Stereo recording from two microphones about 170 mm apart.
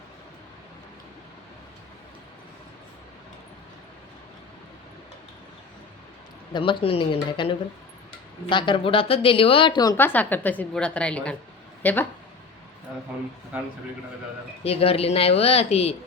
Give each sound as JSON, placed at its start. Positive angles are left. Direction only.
{"t": 6.5, "sound": "a woman's voice", "side_deg": 30}
{"t": 10.0, "sound": "a woman's voice", "side_deg": 10}
{"t": 13.5, "sound": "a man's voice", "side_deg": -10}
{"t": 14.6, "sound": "a woman's voice", "side_deg": 35}